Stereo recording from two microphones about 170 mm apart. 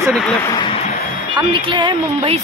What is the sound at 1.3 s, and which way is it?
Speech, 30° right (ahead or behind).